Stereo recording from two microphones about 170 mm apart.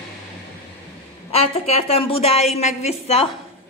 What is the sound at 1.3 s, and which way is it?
A woman's voice, 35° left (ahead or behind).